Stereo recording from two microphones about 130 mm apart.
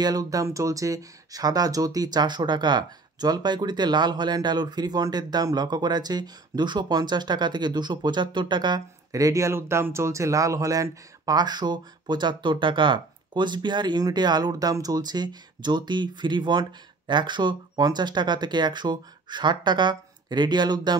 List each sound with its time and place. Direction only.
0.0 s speech: 30° right (ahead or behind)